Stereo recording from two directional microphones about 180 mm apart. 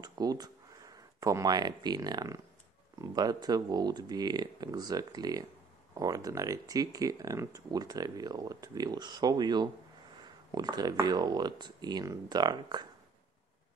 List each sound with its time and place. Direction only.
0.0 s speech: 20° right (ahead or behind)